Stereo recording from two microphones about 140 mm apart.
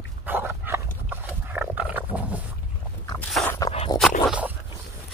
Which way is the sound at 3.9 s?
30° left (ahead or behind).